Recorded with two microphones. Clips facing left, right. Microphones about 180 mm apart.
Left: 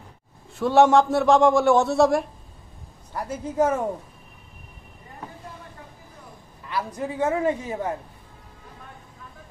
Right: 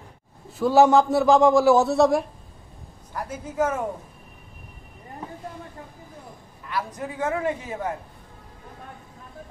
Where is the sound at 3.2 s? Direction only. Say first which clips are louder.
Left 3 dB; 35° left (ahead or behind).